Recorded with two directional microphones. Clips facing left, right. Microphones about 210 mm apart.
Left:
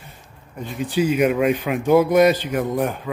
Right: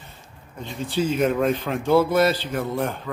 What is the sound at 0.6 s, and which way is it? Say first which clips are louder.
A man's voice: left 4 dB; 15° left (ahead or behind).